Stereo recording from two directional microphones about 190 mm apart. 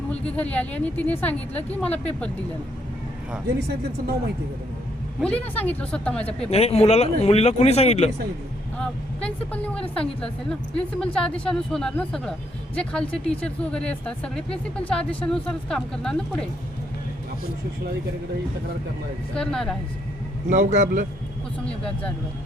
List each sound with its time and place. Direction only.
0.3 s a woman's voice: 10° left (ahead or behind)
5.2 s a woman's voice: 5° left (ahead or behind)
6.5 s speech: 35° left (ahead or behind)
8.8 s a woman's voice: 5° left (ahead or behind)
19.3 s a woman's voice: 5° left (ahead or behind)
20.5 s a man's voice: 40° right (ahead or behind)
21.6 s a woman's voice: 5° left (ahead or behind)